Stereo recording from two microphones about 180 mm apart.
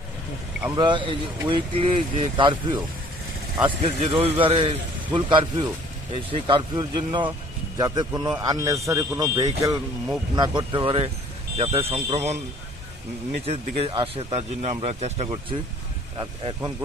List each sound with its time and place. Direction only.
0.7 s a man's voice: 25° right (ahead or behind)
13.5 s speech: 30° right (ahead or behind)
16.2 s a man's voice: 25° right (ahead or behind)